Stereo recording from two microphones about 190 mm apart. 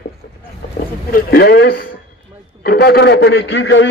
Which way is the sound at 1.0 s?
50° left (ahead or behind).